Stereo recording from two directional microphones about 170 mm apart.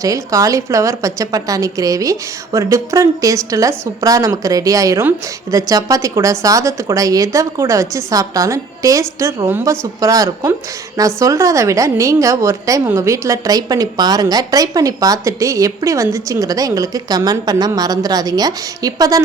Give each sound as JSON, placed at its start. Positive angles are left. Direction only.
{"t": 0.0, "sound": "a woman's voice", "side_deg": -20}